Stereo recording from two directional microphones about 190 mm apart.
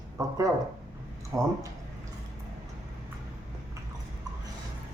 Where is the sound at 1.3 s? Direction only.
15° right (ahead or behind).